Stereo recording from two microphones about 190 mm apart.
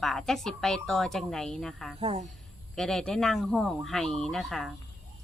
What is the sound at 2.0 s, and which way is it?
Speech, 30° right (ahead or behind).